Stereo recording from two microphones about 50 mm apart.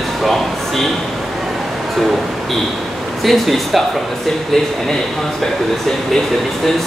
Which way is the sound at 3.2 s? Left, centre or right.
Centre.